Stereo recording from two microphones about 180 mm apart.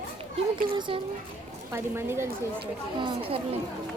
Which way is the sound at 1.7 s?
15° right (ahead or behind).